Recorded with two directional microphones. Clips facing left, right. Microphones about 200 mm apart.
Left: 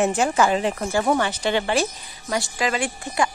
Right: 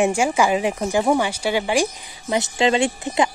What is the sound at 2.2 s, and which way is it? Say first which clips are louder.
Speech: right 5 dB; 25° right (ahead or behind).